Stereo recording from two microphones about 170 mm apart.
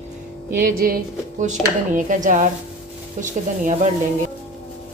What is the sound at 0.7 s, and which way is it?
Speech, 60° right (ahead or behind).